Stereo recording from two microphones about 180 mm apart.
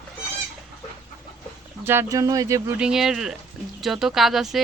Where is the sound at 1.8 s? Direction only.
15° right (ahead or behind).